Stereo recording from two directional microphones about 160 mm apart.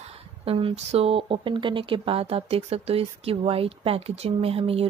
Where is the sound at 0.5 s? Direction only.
35° right (ahead or behind).